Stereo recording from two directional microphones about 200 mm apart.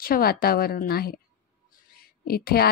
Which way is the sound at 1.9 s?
50° left (ahead or behind).